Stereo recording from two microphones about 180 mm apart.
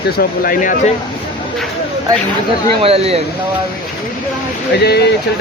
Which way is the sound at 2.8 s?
35° right (ahead or behind).